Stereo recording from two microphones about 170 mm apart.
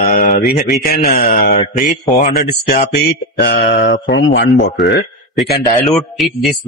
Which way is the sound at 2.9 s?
75° left (ahead or behind).